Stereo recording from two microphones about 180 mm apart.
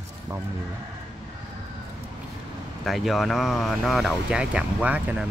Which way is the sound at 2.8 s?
Centre (ahead or behind).